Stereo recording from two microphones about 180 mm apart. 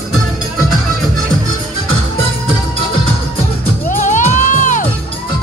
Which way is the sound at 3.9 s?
45° left (ahead or behind).